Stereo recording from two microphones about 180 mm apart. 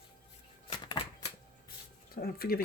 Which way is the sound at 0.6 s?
25° left (ahead or behind).